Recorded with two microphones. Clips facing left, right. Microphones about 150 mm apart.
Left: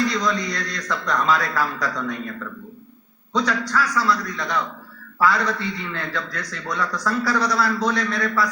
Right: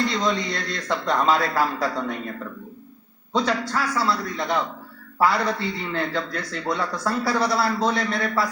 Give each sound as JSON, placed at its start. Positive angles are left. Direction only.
{"t": 0.0, "sound": "a man's voice", "side_deg": -25}